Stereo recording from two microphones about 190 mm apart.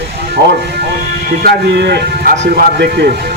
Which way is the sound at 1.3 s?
55° right (ahead or behind).